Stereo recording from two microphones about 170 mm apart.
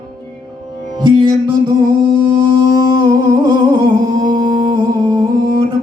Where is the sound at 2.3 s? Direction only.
25° right (ahead or behind).